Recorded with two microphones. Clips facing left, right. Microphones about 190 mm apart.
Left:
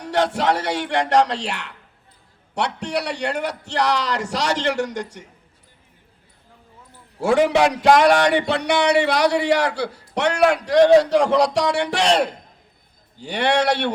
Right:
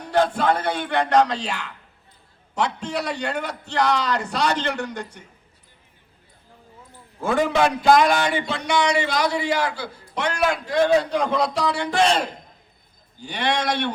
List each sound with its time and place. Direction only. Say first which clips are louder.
0.1 s speech: even; 80° left
7.2 s speech: left 4 dB; 80° left